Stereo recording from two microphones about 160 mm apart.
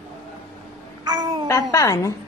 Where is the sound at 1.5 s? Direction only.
20° left (ahead or behind).